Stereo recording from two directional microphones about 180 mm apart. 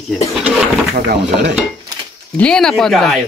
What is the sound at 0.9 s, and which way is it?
Speech, 65° right (ahead or behind).